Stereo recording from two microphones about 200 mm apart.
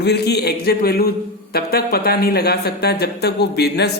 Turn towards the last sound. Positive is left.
turn(degrees=55)  # may be behind; listen again after turning